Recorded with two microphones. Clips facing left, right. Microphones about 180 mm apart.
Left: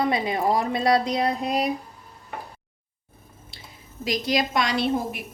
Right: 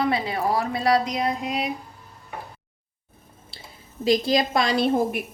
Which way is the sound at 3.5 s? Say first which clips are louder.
Right 3 dB; 30° right (ahead or behind).